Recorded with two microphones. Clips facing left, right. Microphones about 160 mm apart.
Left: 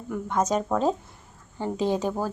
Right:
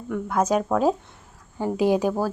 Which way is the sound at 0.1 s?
10° right (ahead or behind).